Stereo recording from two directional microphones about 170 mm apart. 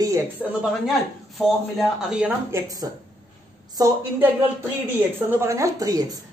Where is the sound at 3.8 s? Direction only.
20° right (ahead or behind).